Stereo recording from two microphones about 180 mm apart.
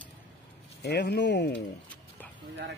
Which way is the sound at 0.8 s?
65° left (ahead or behind).